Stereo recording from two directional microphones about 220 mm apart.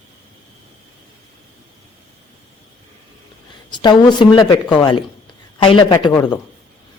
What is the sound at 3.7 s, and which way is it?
Speech, 20° left (ahead or behind).